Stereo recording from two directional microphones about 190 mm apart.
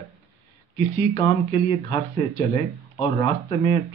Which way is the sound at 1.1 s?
25° left (ahead or behind).